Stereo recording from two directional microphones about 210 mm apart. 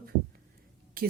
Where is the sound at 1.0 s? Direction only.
45° right (ahead or behind).